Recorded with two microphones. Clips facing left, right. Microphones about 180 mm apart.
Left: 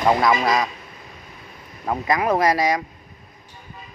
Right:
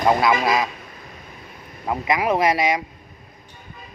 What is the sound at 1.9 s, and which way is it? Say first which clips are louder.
Speech: even; 15° right (ahead or behind).